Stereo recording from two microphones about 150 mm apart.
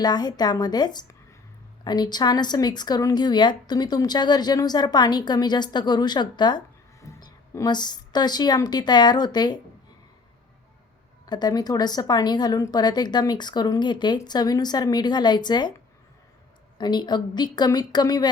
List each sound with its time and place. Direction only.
0.0 s a woman's voice: 25° left (ahead or behind)
11.3 s a woman's voice: 25° left (ahead or behind)
16.7 s a woman's voice: 30° left (ahead or behind)